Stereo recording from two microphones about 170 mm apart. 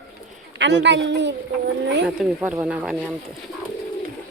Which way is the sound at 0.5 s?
90° right.